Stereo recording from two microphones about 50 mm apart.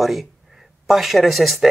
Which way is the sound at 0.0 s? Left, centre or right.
Centre.